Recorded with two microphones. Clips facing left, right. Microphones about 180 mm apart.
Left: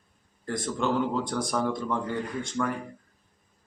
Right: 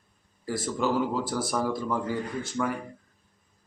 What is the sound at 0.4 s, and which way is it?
Speech, 5° right (ahead or behind).